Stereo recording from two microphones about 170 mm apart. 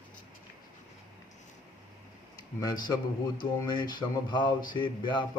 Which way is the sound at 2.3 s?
25° left (ahead or behind).